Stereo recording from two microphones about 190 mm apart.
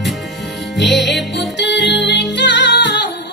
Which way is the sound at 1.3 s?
65° left (ahead or behind).